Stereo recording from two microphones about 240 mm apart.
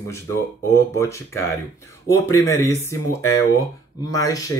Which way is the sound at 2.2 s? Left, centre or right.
Centre.